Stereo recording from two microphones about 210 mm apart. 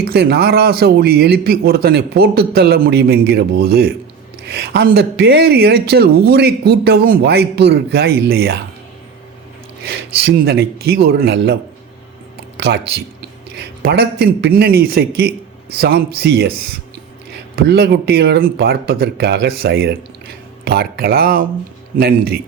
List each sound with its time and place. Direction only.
0.0 s speech: 50° right (ahead or behind)
9.8 s speech: 50° right (ahead or behind)
12.5 s a sound: 50° right (ahead or behind)
13.6 s speech: 50° right (ahead or behind)
17.6 s speech: 50° right (ahead or behind)